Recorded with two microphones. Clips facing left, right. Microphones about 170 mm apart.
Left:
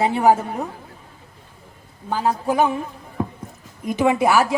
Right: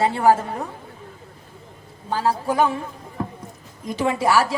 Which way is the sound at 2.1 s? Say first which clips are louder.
Left 1 dB; 15° left (ahead or behind).